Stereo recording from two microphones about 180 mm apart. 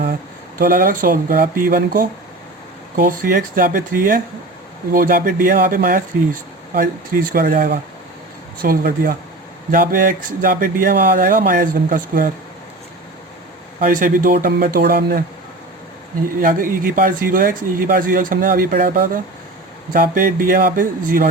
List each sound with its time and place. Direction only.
0.6 s speech: 55° right (ahead or behind)
13.8 s speech: 50° right (ahead or behind)
16.4 s speech: 50° right (ahead or behind)